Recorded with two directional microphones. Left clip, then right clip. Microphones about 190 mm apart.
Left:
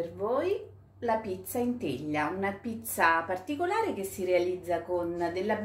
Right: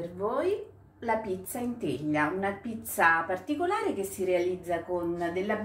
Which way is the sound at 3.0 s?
45° left (ahead or behind).